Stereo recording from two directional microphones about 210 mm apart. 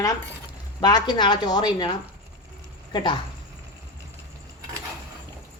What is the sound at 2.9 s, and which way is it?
Speech, 20° left (ahead or behind).